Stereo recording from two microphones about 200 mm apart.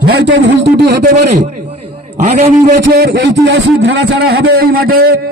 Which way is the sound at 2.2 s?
35° right (ahead or behind).